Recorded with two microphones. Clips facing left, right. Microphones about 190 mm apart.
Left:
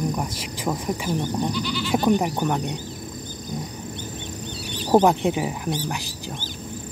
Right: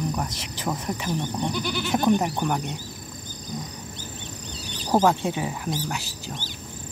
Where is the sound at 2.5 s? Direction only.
20° left (ahead or behind).